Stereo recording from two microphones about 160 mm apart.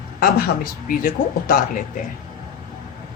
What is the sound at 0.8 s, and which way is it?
Speech, 60° left (ahead or behind).